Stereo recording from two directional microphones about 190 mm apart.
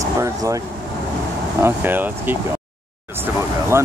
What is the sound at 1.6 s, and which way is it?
Speech, 10° right (ahead or behind).